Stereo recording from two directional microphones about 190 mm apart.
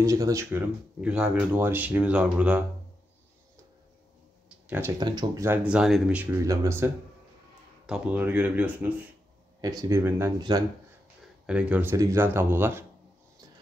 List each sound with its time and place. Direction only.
0.0 s speech: 15° right (ahead or behind)
4.5 s a sound: 10° right (ahead or behind)
5.0 s speech: 25° right (ahead or behind); by 6.3 s 5° right (ahead or behind)
6.4 s speech: 20° right (ahead or behind)
9.6 s speech: 20° right (ahead or behind)
11.4 s speech: 5° right (ahead or behind)